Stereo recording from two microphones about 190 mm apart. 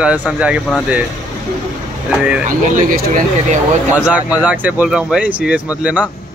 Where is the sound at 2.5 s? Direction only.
45° right (ahead or behind).